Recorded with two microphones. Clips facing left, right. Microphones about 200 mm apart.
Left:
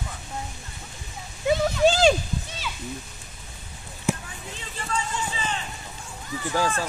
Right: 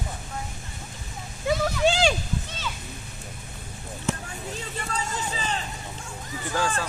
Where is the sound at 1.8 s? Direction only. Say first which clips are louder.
Left 4 dB; 40° left (ahead or behind).